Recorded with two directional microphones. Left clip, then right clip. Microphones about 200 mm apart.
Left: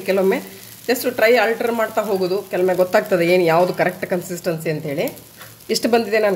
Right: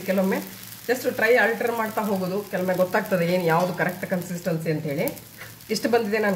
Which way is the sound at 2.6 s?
40° left (ahead or behind).